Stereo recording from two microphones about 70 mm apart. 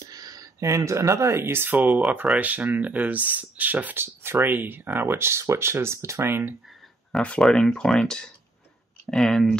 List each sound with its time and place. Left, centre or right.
0.0 s speech: right
7.1 s speech: centre